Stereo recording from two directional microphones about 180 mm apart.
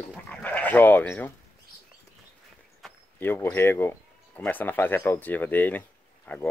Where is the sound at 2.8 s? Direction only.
10° left (ahead or behind).